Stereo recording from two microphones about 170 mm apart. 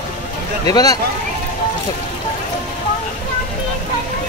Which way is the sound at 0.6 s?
20° left (ahead or behind).